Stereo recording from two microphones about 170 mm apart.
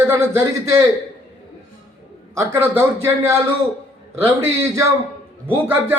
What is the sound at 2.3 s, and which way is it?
Speech, 15° right (ahead or behind).